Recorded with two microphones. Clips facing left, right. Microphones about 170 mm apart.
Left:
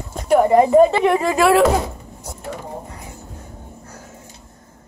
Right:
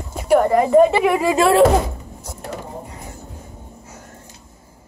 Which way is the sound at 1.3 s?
30° right (ahead or behind).